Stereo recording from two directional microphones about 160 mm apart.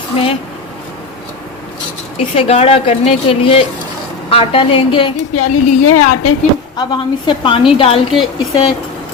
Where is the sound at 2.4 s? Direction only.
40° left (ahead or behind).